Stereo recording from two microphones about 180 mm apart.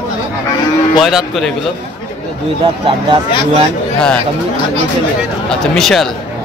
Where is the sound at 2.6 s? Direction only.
25° right (ahead or behind).